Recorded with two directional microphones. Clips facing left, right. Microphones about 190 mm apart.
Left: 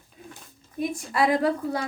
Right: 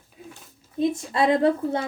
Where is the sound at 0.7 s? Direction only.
25° right (ahead or behind).